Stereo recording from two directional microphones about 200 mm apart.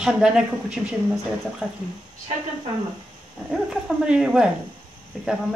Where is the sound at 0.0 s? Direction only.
5° right (ahead or behind).